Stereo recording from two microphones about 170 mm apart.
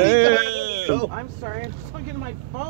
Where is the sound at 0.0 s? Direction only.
80° right.